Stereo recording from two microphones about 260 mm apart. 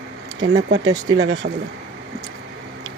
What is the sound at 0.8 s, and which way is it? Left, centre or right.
Speech, centre.